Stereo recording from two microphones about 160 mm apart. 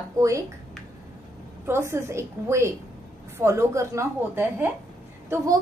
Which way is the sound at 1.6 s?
15° right (ahead or behind).